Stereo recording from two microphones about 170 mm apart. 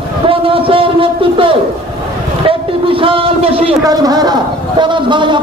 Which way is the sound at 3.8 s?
20° right (ahead or behind).